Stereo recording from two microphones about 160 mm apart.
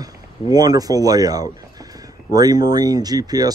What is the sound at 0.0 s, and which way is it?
Speech, 25° right (ahead or behind).